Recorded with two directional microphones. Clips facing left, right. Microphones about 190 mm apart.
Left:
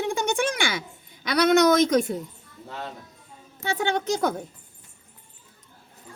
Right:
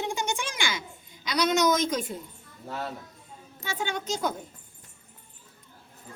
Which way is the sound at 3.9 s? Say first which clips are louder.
Left 5 dB; 60° left (ahead or behind).